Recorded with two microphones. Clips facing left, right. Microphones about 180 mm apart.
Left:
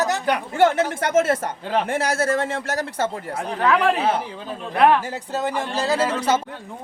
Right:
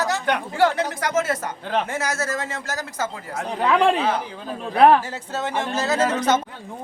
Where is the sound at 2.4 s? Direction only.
60° left (ahead or behind).